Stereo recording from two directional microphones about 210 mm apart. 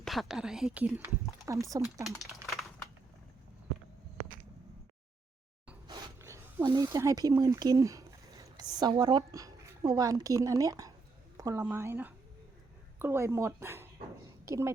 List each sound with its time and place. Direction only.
0.0 s speech: centre (ahead or behind); by 2.0 s 15° right (ahead or behind)
2.3 s typing: centre (ahead or behind)
5.9 s a sound: 15° right (ahead or behind)
8.7 s a woman's voice: 20° right (ahead or behind)